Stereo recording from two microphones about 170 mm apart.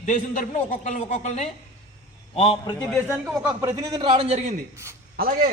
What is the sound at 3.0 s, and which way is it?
Speech, 5° right (ahead or behind).